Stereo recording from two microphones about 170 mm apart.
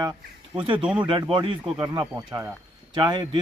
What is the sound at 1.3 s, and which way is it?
Speech, 30° right (ahead or behind).